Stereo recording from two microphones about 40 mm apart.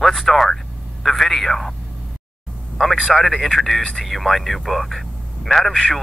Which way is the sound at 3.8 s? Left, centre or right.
Left.